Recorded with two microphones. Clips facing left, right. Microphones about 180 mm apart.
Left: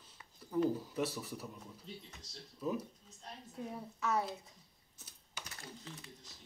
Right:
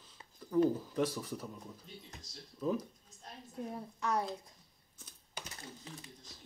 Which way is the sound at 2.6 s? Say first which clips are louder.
Right 3 dB; 5° left (ahead or behind).